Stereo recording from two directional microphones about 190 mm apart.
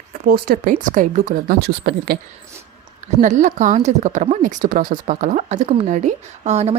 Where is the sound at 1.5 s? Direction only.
55° right (ahead or behind).